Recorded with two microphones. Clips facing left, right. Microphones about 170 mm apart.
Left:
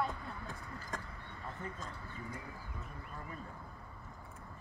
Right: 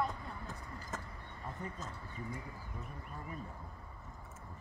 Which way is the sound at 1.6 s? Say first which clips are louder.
Even; 15° right (ahead or behind).